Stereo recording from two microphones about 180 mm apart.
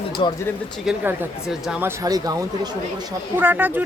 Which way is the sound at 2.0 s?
20° right (ahead or behind).